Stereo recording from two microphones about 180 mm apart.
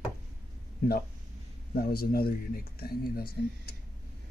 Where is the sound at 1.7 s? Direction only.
60° left (ahead or behind).